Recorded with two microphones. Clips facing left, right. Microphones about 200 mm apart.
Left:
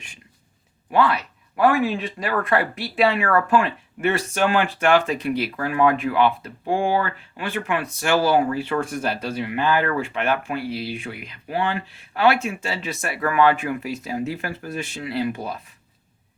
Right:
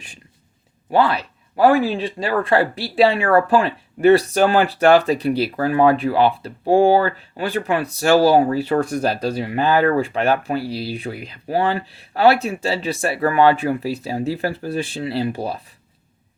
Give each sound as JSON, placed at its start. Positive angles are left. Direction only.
{"t": 0.9, "sound": "speech", "side_deg": -30}